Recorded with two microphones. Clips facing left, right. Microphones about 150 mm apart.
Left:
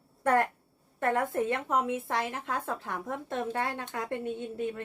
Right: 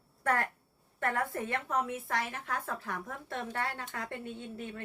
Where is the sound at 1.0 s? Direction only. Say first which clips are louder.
Left 5 dB; 20° left (ahead or behind).